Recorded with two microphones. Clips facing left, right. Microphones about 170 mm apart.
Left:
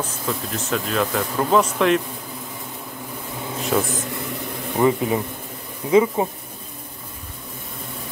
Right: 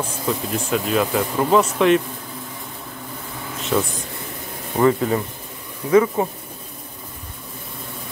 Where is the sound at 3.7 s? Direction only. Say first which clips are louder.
Right 1 dB; 5° left (ahead or behind).